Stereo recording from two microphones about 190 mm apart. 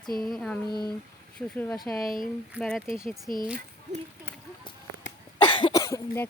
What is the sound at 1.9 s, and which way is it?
Child singing, centre (ahead or behind).